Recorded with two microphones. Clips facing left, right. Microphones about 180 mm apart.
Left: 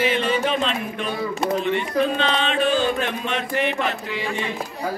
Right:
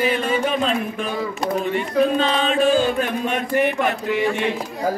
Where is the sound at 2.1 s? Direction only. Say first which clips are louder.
Right 3 dB; 45° right (ahead or behind).